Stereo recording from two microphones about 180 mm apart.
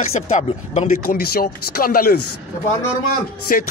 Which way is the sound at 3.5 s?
50° left (ahead or behind).